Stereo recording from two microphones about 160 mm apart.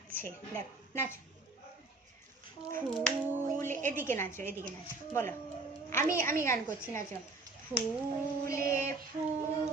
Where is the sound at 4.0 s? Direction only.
15° left (ahead or behind).